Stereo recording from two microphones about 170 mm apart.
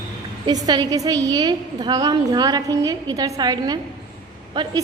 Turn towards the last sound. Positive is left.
turn(degrees=-25)  # may be behind; listen again after turning